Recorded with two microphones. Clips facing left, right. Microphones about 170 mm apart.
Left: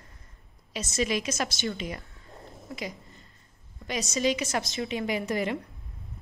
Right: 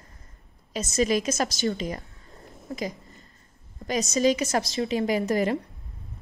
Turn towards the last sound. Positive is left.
turn(degrees=-40)  # may be behind; listen again after turning